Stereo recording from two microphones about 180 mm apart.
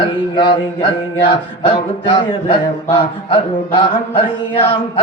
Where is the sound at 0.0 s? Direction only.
25° left (ahead or behind).